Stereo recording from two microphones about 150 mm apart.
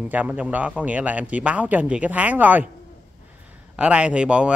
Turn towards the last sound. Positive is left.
turn(degrees=-5)  # may be behind; listen again after turning